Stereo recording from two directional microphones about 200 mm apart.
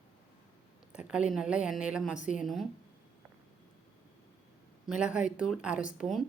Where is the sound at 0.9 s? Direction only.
5° right (ahead or behind).